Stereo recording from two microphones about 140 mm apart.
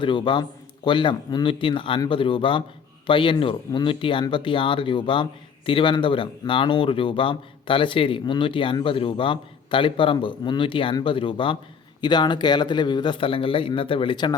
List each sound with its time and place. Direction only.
0.0 s speech: 35° left (ahead or behind)